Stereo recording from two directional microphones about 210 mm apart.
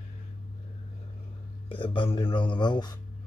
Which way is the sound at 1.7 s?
25° left (ahead or behind).